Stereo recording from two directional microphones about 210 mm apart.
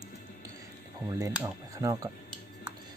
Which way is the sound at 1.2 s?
15° right (ahead or behind).